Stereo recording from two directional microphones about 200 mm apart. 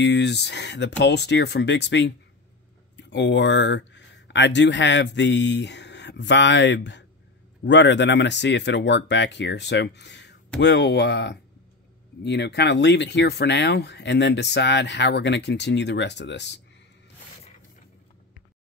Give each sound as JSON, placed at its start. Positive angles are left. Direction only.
{"t": 0.0, "sound": "speech", "side_deg": 60}